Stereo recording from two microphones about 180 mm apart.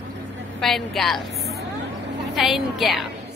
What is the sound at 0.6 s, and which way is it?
Speech, centre (ahead or behind).